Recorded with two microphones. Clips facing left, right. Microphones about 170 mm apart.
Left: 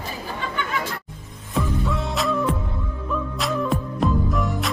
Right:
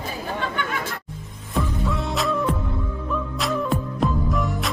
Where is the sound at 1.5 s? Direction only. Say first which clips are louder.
Left 1 dB; centre (ahead or behind).